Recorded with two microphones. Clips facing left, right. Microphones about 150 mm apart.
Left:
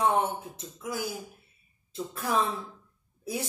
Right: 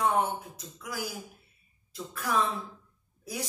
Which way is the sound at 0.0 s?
25° left (ahead or behind).